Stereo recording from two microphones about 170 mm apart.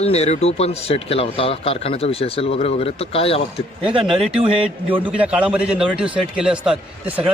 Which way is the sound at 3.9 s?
30° right (ahead or behind).